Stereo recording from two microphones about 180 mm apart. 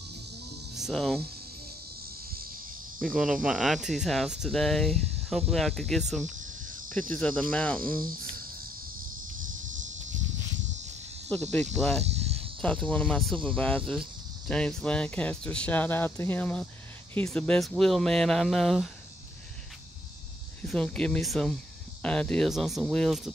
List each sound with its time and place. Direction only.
0.7 s speech: centre (ahead or behind)
3.0 s speech: centre (ahead or behind)
7.8 s cricket: 50° right (ahead or behind)
9.4 s a sound: 45° right (ahead or behind)
11.3 s speech: 10° left (ahead or behind)
11.6 s speech: 35° right (ahead or behind)
12.6 s speech: 5° left (ahead or behind)
20.6 s speech: 5° left (ahead or behind)